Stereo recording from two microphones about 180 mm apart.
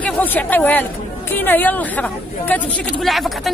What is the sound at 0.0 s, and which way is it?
Speech, 10° left (ahead or behind).